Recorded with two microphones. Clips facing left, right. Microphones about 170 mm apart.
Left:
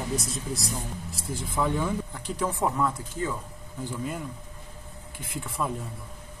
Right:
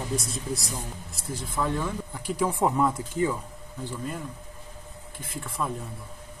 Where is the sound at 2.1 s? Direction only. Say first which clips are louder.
Right 3 dB; 10° right (ahead or behind).